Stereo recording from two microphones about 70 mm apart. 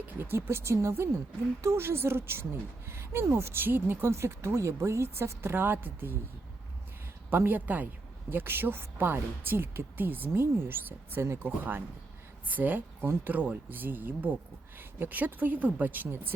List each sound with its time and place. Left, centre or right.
0.1 s speech: right
7.3 s speech: right